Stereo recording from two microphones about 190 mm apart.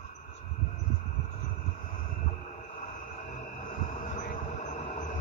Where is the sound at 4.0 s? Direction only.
40° left (ahead or behind).